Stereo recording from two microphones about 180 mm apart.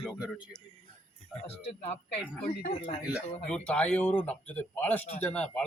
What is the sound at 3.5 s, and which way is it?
A man's voice, 5° left (ahead or behind).